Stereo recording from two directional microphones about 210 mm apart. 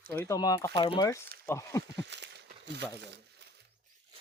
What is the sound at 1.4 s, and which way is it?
Speech, 15° left (ahead or behind).